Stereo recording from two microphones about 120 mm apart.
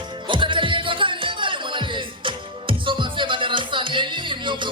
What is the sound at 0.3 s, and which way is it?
Music, 45° right (ahead or behind).